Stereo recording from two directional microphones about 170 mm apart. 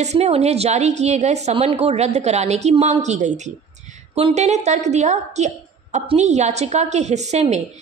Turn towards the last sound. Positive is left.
turn(degrees=-40)  # may be behind; listen again after turning